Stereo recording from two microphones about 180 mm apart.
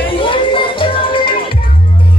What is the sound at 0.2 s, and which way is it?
Music, 30° left (ahead or behind).